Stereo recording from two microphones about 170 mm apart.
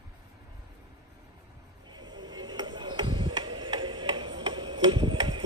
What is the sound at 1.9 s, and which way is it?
Music, 25° right (ahead or behind).